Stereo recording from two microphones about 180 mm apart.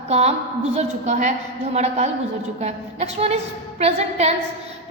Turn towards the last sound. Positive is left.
turn(degrees=-35)  # may be behind; listen again after turning